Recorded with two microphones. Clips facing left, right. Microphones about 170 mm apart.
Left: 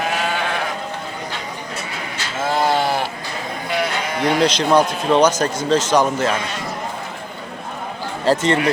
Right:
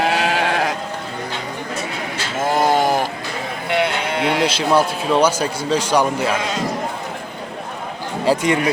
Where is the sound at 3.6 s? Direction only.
60° right (ahead or behind).